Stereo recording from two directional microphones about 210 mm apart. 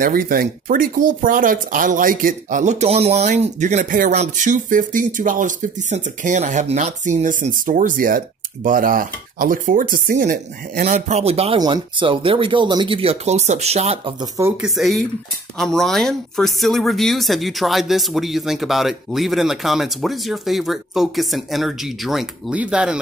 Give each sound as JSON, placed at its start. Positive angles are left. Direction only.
{"t": 0.0, "sound": "speech", "side_deg": -45}
{"t": 14.6, "sound": "speech", "side_deg": 0}